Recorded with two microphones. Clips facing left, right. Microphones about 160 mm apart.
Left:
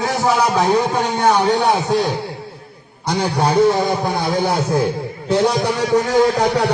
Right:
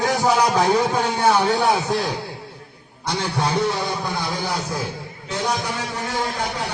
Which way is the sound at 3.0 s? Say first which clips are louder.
Left 6 dB; 40° left (ahead or behind).